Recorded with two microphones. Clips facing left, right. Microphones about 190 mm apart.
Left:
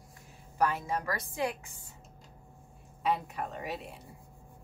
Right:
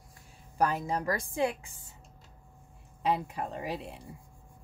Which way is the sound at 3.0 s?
30° right (ahead or behind).